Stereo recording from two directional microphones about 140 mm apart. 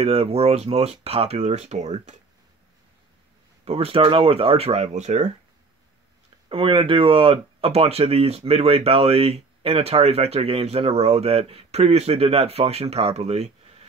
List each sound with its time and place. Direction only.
0.0 s speech: 45° right (ahead or behind)
3.6 s speech: 45° right (ahead or behind)
6.5 s speech: 40° right (ahead or behind)